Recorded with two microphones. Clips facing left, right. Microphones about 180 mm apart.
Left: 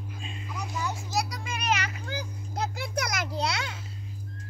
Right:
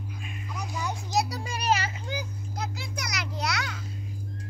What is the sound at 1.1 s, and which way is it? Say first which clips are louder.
Children playing: right 6 dB; 25° right (ahead or behind).